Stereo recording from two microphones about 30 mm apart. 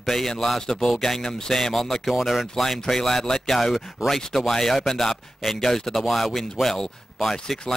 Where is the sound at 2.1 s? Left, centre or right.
Centre.